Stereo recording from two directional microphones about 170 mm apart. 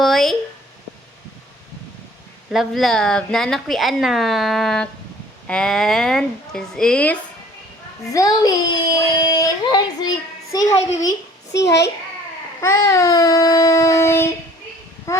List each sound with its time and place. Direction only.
0.0 s a sound: centre (ahead or behind)
2.5 s a woman's voice: centre (ahead or behind)
8.1 s a child's voice: 20° left (ahead or behind)
11.5 s a child's voice: 85° left
12.6 s a child's voice: 15° left (ahead or behind)